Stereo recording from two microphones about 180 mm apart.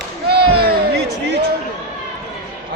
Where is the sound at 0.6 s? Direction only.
65° right (ahead or behind).